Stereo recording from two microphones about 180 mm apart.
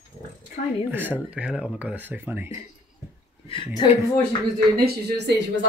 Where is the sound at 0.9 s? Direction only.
10° right (ahead or behind).